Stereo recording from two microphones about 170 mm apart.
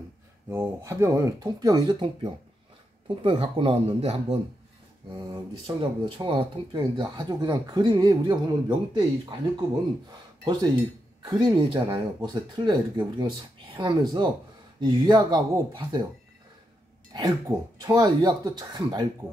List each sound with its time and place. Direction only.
0.5 s speech: 15° right (ahead or behind); by 4.4 s 35° right (ahead or behind)
5.8 s speech: 30° right (ahead or behind)
10.4 s speech: 25° right (ahead or behind)
17.1 s speech: 20° right (ahead or behind)